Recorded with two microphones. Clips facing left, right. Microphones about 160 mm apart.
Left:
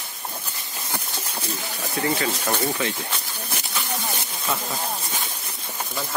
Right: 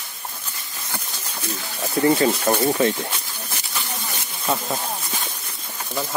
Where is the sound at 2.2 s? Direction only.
35° right (ahead or behind).